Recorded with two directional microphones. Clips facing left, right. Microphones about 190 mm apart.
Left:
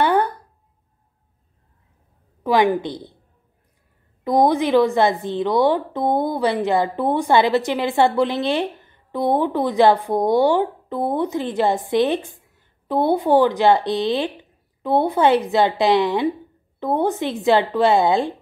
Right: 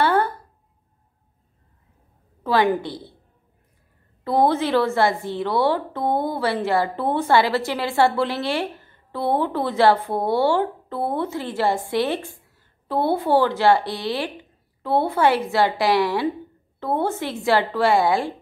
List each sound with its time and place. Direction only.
0.0 s a sound: 15° left (ahead or behind)
2.4 s speech: 15° left (ahead or behind)
4.2 s speech: 15° left (ahead or behind)